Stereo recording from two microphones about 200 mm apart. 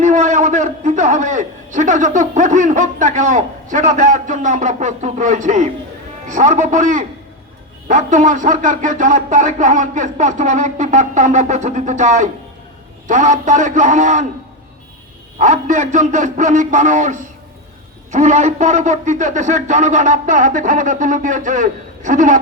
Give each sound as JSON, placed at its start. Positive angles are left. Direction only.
{"t": 0.0, "sound": "a man's voice", "side_deg": -40}
{"t": 15.4, "sound": "speech", "side_deg": -40}